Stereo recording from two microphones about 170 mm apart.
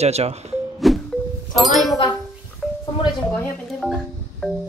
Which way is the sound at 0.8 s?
Centre (ahead or behind).